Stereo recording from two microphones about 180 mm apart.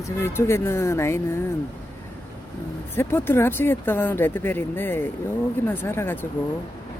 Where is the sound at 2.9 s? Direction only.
10° left (ahead or behind).